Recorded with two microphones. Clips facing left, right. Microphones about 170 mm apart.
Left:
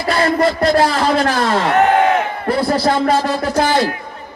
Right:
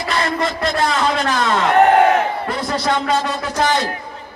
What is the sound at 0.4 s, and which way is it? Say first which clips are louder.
A man's voice: left 6 dB; 35° left (ahead or behind).